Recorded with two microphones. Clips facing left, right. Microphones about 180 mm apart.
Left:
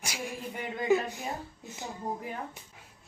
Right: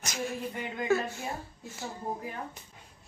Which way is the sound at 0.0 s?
10° left (ahead or behind).